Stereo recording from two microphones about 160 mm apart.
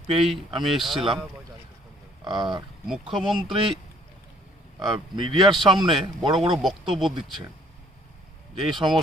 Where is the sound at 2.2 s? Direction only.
30° right (ahead or behind).